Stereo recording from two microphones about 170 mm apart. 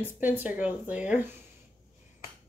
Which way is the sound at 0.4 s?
10° right (ahead or behind).